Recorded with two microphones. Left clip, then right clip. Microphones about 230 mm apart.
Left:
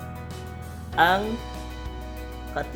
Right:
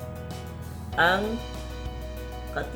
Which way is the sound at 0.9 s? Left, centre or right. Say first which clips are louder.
Left 2 dB; left.